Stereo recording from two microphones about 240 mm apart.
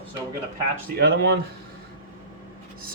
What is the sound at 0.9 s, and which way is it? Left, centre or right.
Speech, right.